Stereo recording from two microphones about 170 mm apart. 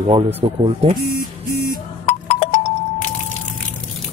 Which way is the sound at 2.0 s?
35° left (ahead or behind).